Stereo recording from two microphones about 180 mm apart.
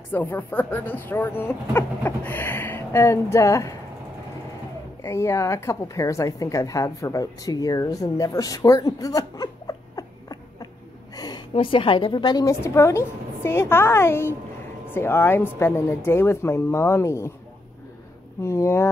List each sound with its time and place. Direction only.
0.1 s speech: 10° left (ahead or behind)
5.0 s a woman's voice: 15° left (ahead or behind)
18.4 s speech: 15° left (ahead or behind)